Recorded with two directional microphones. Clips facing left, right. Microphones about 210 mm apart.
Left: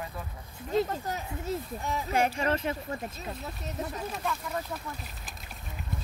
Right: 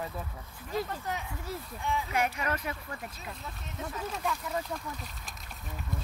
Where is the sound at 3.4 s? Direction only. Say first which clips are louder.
Left 4 dB; 40° left (ahead or behind).